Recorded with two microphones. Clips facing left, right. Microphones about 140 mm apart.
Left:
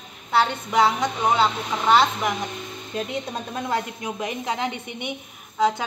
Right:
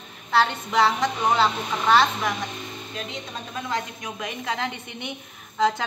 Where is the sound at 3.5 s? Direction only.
30° left (ahead or behind).